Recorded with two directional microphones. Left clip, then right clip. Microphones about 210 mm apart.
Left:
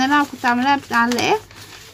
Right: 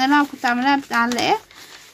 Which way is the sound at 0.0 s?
30° right (ahead or behind).